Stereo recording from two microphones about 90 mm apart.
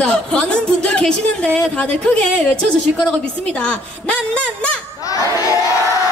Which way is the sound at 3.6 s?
15° left (ahead or behind).